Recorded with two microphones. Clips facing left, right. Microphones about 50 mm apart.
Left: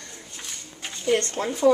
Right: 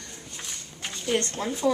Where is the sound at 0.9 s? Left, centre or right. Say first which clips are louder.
Left 4 dB; left.